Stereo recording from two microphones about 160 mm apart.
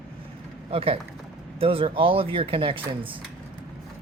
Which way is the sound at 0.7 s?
35° right (ahead or behind).